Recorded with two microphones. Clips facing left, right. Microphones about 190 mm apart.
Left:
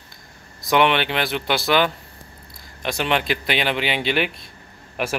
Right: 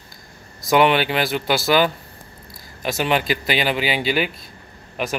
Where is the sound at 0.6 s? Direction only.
Centre (ahead or behind).